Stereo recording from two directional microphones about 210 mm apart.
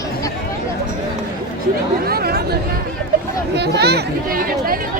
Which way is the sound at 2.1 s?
50° right (ahead or behind).